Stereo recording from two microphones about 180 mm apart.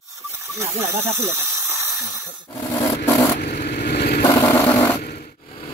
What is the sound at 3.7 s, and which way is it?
Vehicle, 60° left (ahead or behind).